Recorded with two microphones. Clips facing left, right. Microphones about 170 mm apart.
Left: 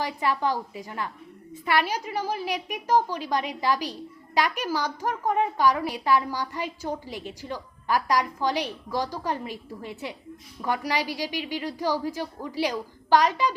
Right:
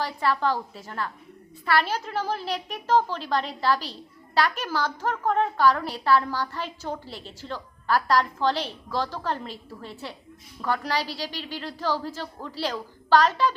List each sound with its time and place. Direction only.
0.0 s a woman's voice: 15° left (ahead or behind)